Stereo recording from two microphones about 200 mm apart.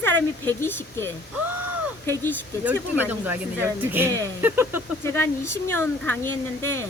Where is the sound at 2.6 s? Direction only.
10° right (ahead or behind).